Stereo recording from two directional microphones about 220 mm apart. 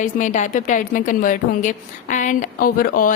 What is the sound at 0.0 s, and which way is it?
A woman's voice, 35° left (ahead or behind).